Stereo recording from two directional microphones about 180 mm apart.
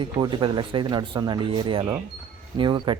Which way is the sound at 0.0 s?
25° right (ahead or behind).